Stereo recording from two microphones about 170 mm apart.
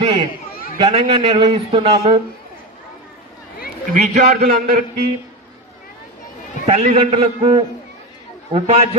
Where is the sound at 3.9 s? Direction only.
50° right (ahead or behind).